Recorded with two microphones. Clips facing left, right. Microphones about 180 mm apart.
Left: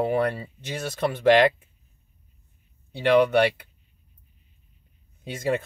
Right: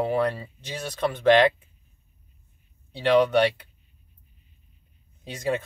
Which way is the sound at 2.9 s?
10° left (ahead or behind).